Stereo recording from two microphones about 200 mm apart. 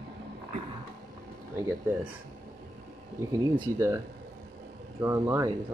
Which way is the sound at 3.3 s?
15° right (ahead or behind).